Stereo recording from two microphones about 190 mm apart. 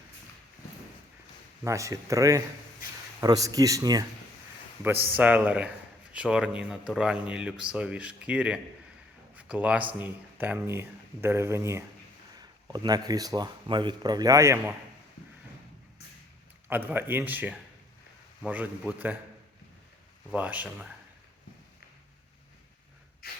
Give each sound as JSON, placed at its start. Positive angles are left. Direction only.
{"t": 1.6, "sound": "speech", "side_deg": -15}
{"t": 9.3, "sound": "a sound", "side_deg": -5}
{"t": 10.0, "sound": "speech", "side_deg": -10}
{"t": 16.6, "sound": "speech", "side_deg": -10}
{"t": 20.3, "sound": "speech", "side_deg": -10}
{"t": 23.2, "sound": "snort", "side_deg": 55}